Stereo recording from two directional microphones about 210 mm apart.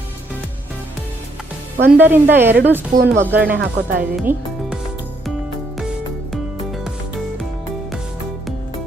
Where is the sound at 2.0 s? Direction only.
10° right (ahead or behind).